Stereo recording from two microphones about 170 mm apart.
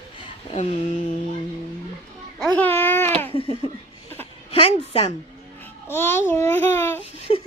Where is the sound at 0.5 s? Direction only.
40° left (ahead or behind).